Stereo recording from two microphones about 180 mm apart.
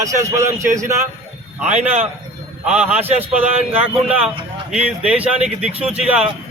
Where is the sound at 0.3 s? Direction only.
15° right (ahead or behind).